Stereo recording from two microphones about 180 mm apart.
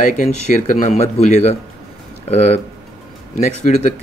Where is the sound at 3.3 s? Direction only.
40° left (ahead or behind).